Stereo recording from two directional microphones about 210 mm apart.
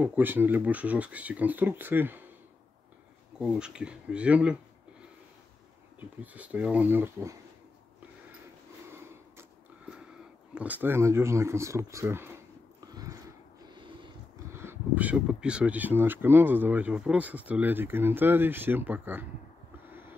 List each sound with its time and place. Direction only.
0.0 s speech: 10° right (ahead or behind)
3.3 s speech: 5° right (ahead or behind)
5.9 s speech: 5° right (ahead or behind)
8.9 s a sound: 10° right (ahead or behind)
10.5 s speech: 5° right (ahead or behind)
12.9 s a sound: 15° right (ahead or behind)
14.5 s speech: 10° right (ahead or behind)